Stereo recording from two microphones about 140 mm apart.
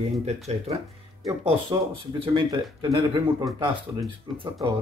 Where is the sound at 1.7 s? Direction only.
30° right (ahead or behind).